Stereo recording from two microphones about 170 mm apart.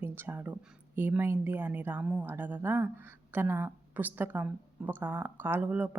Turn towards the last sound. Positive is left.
turn(degrees=-10)  # may be behind; listen again after turning